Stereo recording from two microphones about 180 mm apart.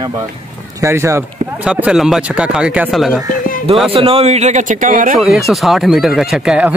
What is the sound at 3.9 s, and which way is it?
Speech, 30° right (ahead or behind).